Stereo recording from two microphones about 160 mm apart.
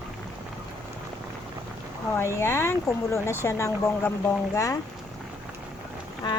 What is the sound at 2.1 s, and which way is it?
Speech, 15° left (ahead or behind).